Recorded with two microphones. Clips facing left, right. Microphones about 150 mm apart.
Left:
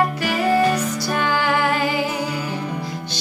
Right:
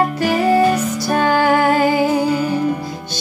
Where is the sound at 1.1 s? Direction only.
45° right (ahead or behind).